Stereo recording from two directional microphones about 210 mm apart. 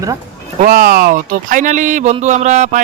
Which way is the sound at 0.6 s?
45° right (ahead or behind).